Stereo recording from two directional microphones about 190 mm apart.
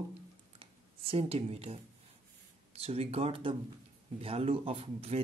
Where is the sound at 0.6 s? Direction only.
30° right (ahead or behind).